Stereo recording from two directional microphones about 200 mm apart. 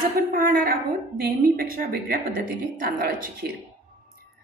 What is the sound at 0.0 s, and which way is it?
A woman's voice, 45° right (ahead or behind).